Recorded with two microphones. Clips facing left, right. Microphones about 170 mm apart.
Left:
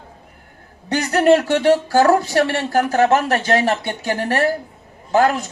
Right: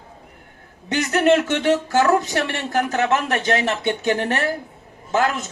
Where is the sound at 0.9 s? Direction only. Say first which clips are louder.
Left 3 dB; 40° left (ahead or behind).